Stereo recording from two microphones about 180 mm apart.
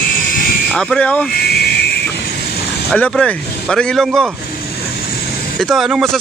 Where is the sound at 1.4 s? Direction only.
65° left (ahead or behind).